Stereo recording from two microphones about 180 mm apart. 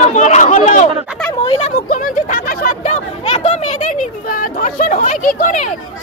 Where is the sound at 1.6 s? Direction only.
45° left (ahead or behind).